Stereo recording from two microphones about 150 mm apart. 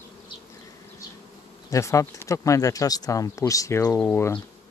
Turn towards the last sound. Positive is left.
turn(degrees=15)  # may be behind; listen again after turning